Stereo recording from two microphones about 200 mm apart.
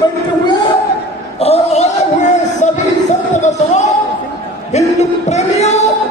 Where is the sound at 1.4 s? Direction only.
30° left (ahead or behind).